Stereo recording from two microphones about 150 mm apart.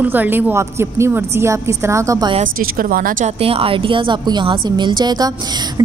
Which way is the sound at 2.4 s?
70° right (ahead or behind).